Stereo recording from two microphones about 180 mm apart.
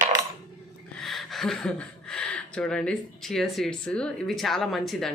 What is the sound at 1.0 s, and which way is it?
Speech, centre (ahead or behind).